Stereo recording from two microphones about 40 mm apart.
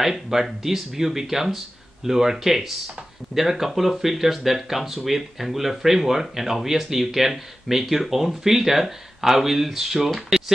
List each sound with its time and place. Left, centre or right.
0.0 s speech: centre